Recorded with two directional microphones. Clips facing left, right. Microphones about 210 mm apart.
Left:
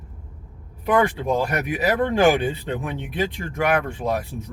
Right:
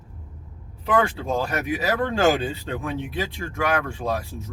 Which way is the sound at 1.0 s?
15° left (ahead or behind).